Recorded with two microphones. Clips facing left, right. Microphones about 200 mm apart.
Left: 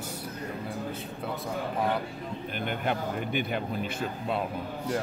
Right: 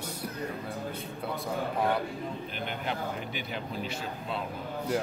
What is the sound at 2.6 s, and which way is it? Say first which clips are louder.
Speech: left 5 dB; 55° left (ahead or behind).